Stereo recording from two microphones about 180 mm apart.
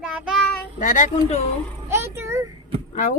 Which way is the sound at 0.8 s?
45° left (ahead or behind).